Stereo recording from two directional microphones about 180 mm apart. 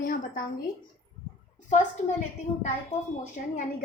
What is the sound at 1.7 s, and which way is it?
Speech, 45° left (ahead or behind).